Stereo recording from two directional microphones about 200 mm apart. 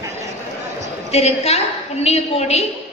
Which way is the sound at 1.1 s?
30° left (ahead or behind).